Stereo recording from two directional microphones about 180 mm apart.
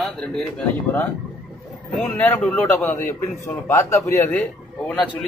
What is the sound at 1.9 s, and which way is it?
A man's voice, centre (ahead or behind).